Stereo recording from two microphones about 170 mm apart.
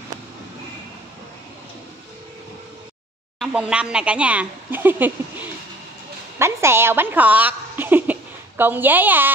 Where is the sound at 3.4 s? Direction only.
5° right (ahead or behind).